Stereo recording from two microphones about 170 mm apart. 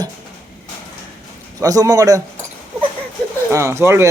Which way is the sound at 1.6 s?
20° right (ahead or behind).